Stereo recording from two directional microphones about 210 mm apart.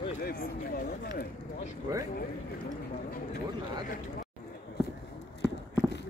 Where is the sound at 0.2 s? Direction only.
45° left (ahead or behind).